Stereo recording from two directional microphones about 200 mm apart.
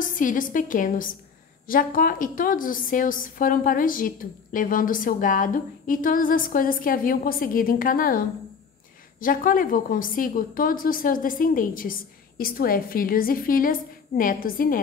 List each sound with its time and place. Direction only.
0.0 s a woman's voice: 40° left (ahead or behind)